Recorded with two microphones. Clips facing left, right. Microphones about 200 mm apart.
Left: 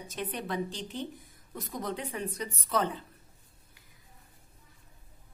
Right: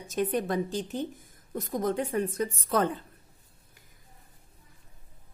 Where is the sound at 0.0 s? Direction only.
45° right (ahead or behind).